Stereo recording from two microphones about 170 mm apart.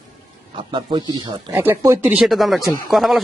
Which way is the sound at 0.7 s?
30° right (ahead or behind).